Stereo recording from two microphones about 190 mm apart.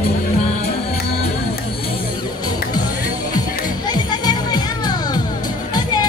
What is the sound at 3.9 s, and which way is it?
Music, 20° left (ahead or behind).